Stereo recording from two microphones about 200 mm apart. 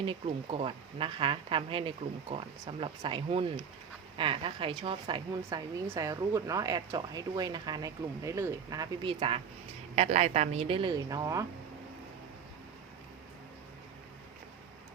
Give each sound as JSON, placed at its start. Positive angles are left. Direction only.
{"t": 0.0, "sound": "speech", "side_deg": -30}